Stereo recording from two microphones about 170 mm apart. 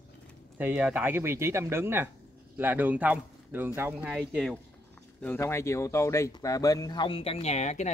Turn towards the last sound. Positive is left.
turn(degrees=45)  # may be behind; listen again after turning